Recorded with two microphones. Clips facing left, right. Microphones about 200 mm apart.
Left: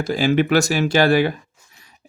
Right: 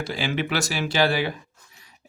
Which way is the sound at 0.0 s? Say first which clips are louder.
Left 9 dB; 45° left (ahead or behind).